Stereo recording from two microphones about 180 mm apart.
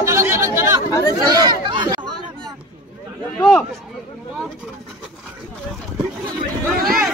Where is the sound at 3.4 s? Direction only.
5° left (ahead or behind).